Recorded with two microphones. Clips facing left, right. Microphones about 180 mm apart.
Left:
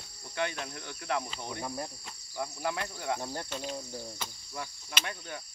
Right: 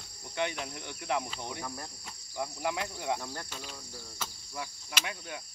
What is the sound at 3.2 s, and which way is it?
Cricket, 25° left (ahead or behind).